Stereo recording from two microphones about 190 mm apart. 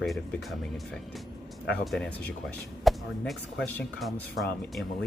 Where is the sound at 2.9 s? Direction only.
Centre (ahead or behind).